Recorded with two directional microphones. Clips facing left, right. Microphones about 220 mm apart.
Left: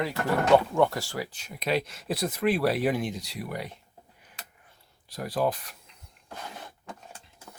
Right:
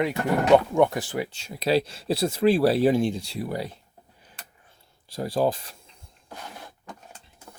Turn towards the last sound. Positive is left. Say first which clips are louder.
# right 4 dB
turn(degrees=-30)  # may be behind; listen again after turning